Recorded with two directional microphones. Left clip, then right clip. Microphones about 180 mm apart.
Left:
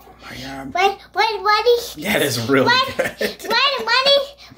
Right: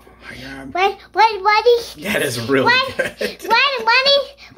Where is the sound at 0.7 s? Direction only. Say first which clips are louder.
Even; 30° right (ahead or behind).